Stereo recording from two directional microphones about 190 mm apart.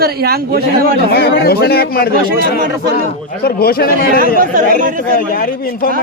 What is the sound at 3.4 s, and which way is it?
Speech, 55° left (ahead or behind).